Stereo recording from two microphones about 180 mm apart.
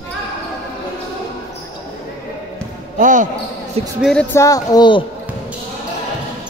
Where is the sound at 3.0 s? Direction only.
45° right (ahead or behind).